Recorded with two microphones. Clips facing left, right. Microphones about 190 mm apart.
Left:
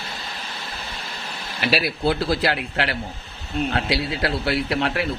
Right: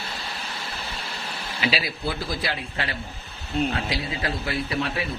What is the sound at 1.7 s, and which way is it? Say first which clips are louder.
A man's voice: left 7 dB; 65° left (ahead or behind).